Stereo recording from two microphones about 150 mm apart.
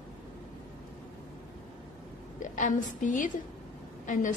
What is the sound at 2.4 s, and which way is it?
A woman's voice, 60° left (ahead or behind).